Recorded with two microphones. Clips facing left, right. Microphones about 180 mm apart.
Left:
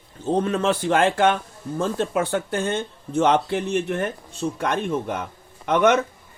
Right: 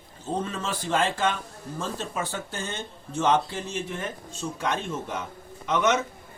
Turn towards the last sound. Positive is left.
turn(degrees=60)  # may be behind; listen again after turning